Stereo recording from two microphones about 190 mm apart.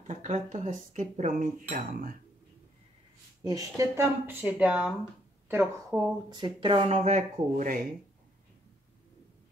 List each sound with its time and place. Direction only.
0.0 s cutlery: 40° right (ahead or behind)
3.4 s speech: 20° right (ahead or behind)
7.0 s cutlery: 40° right (ahead or behind)